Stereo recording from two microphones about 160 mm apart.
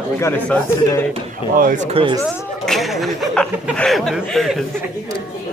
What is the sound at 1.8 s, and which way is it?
Speech, 35° right (ahead or behind).